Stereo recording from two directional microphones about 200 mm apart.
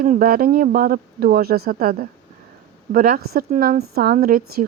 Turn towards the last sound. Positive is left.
turn(degrees=-50)  # may be behind; listen again after turning